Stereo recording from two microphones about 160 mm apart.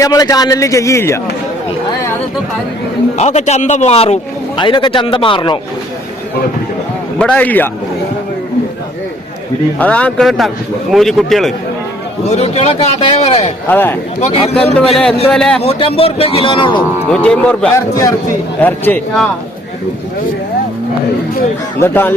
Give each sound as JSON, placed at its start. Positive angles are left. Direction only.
{"t": 0.0, "sound": "a man's voice", "side_deg": 20}
{"t": 3.2, "sound": "a man's voice", "side_deg": 45}
{"t": 7.2, "sound": "speech", "side_deg": 10}
{"t": 9.7, "sound": "a man's voice", "side_deg": 10}
{"t": 12.3, "sound": "a man's voice", "side_deg": 45}
{"t": 13.7, "sound": "speech", "side_deg": 15}
{"t": 14.2, "sound": "a man's voice", "side_deg": 40}
{"t": 15.3, "sound": "a man's voice", "side_deg": 5}
{"t": 15.6, "sound": "a man's voice", "side_deg": 35}
{"t": 17.1, "sound": "speech", "side_deg": 5}
{"t": 21.8, "sound": "speech", "side_deg": 15}